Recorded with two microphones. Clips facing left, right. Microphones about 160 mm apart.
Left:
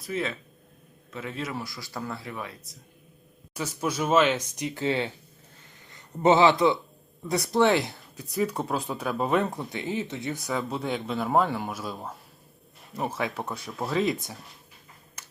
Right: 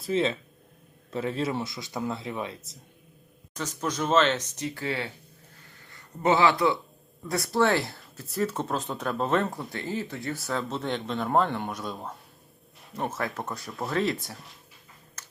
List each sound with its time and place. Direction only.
0.0 s speech: 25° right (ahead or behind)
3.5 s speech: 10° left (ahead or behind)
8.6 s speech: 5° left (ahead or behind)
9.7 s speech: 20° left (ahead or behind)
10.4 s speech: 5° left (ahead or behind)
15.2 s a sound: 10° left (ahead or behind)